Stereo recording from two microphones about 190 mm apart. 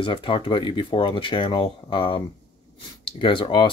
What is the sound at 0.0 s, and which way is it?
Speech, 25° left (ahead or behind).